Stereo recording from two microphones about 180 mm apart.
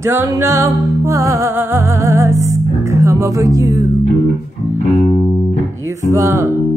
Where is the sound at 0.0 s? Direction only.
15° right (ahead or behind).